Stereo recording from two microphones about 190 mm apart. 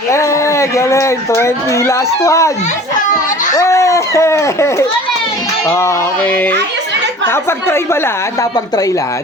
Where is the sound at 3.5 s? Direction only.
15° left (ahead or behind).